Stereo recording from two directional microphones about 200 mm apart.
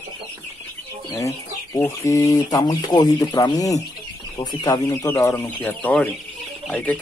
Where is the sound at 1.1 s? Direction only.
15° left (ahead or behind).